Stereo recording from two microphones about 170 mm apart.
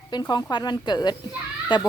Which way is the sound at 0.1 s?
25° left (ahead or behind).